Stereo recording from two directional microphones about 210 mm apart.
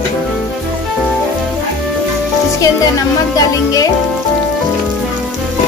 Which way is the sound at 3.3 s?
15° left (ahead or behind).